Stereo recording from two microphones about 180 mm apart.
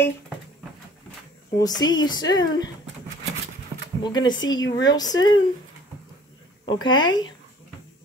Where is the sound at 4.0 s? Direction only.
25° left (ahead or behind).